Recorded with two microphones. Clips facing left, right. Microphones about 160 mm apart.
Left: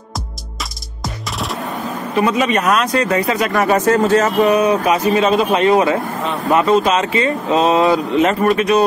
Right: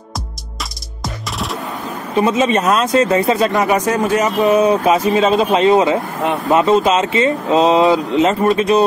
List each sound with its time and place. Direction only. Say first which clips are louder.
1.0 s music: even; centre (ahead or behind)
2.1 s speech: right 2 dB; 25° right (ahead or behind)
3.6 s speech: left 2 dB; 15° right (ahead or behind)
4.4 s speech: right 1 dB; 25° right (ahead or behind)